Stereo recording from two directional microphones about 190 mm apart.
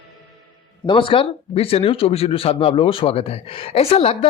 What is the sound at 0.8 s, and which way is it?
Speech, 25° left (ahead or behind).